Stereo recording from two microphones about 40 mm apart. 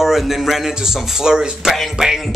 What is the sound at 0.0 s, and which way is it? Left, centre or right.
Music, centre.